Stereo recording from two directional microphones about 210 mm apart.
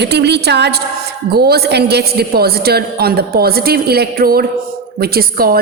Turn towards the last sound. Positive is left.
turn(degrees=-45)  # may be behind; listen again after turning